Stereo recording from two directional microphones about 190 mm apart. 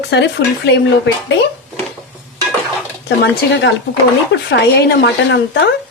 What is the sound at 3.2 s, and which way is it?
A woman's voice, 70° left (ahead or behind).